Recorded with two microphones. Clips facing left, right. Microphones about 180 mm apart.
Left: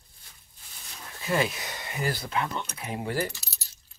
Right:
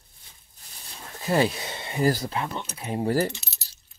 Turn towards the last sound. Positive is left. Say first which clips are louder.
# right 7 dB
turn(degrees=-20)  # may be behind; listen again after turning